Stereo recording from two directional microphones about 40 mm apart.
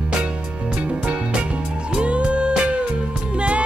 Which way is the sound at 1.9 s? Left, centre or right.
Right.